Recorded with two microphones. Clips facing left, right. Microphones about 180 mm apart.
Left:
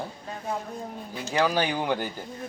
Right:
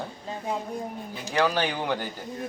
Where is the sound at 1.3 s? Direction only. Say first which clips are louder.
Even; 10° left (ahead or behind).